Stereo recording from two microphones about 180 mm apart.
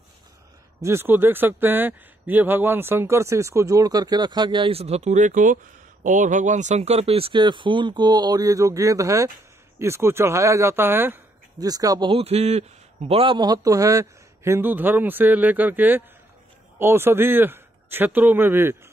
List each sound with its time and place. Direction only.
0.8 s a man's voice: 10° right (ahead or behind)